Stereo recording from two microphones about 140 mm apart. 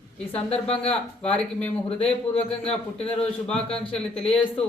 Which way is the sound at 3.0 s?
5° left (ahead or behind).